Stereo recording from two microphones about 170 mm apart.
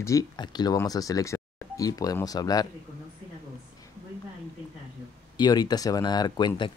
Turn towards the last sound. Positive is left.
turn(degrees=25)  # may be behind; listen again after turning